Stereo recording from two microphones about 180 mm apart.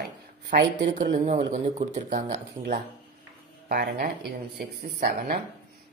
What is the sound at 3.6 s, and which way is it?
Speech, 55° right (ahead or behind).